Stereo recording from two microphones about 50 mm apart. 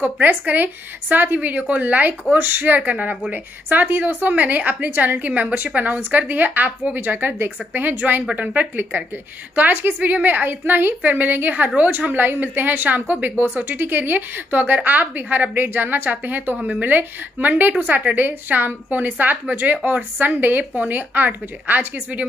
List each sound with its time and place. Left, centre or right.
0.0 s a woman's voice: right
9.6 s a woman's voice: right
11.0 s a woman's voice: right